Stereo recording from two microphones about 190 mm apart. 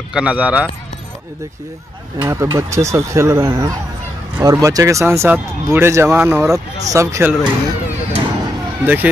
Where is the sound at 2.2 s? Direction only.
15° right (ahead or behind).